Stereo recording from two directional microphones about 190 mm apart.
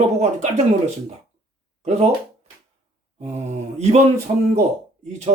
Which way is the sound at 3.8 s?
35° right (ahead or behind).